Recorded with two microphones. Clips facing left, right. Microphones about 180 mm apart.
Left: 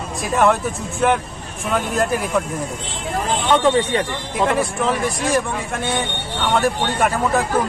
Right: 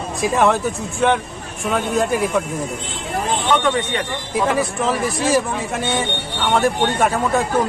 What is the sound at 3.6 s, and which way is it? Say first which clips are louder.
Speech: left 3 dB; 30° left (ahead or behind).